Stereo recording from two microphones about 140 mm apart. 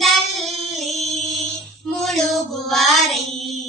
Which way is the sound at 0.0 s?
Centre (ahead or behind).